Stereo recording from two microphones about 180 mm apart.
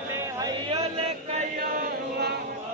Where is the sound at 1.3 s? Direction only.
55° right (ahead or behind).